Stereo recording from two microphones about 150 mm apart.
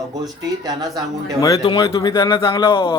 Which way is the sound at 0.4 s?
25° right (ahead or behind).